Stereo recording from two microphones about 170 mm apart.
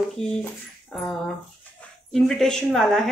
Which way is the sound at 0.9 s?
Centre (ahead or behind).